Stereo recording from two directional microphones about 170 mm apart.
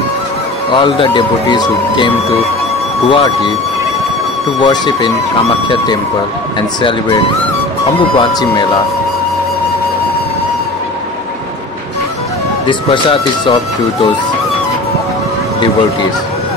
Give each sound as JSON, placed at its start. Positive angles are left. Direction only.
{"t": 0.7, "sound": "speech", "side_deg": 30}
{"t": 3.1, "sound": "speech", "side_deg": 30}
{"t": 4.6, "sound": "speech", "side_deg": 25}
{"t": 8.2, "sound": "speech", "side_deg": 25}
{"t": 12.6, "sound": "speech", "side_deg": 30}